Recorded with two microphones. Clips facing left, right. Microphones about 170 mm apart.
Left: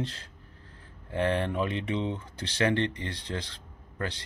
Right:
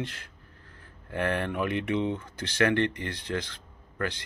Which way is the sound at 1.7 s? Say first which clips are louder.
Right 3 dB; 60° right (ahead or behind).